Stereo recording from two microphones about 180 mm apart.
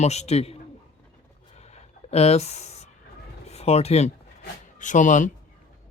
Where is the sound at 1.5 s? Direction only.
40° left (ahead or behind).